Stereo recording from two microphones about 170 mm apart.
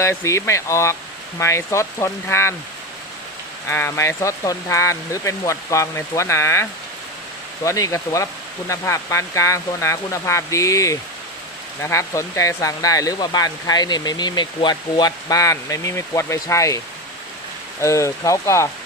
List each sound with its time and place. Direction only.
0.0 s speech: 15° left (ahead or behind)
3.7 s speech: 15° left (ahead or behind)